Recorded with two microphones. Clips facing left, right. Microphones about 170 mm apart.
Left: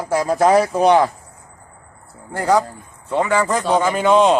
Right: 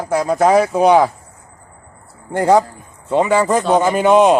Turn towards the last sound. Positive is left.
turn(degrees=-15)  # may be behind; listen again after turning